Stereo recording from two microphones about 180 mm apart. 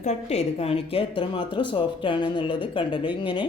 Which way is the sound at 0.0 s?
35° left (ahead or behind).